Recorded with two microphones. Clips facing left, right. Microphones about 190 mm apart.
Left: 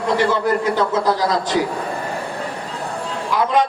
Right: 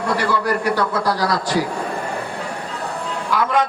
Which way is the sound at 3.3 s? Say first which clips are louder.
Left 2 dB; 20° left (ahead or behind).